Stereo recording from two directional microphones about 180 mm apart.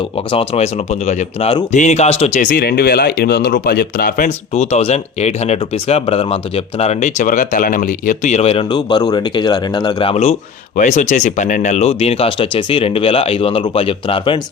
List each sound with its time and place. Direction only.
0.3 s speech: 35° left (ahead or behind); by 4.3 s 55° left (ahead or behind)
4.3 s speech: 40° left (ahead or behind)
10.8 s speech: 45° left (ahead or behind)